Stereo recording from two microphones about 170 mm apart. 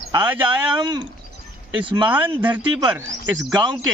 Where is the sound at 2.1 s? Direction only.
10° right (ahead or behind).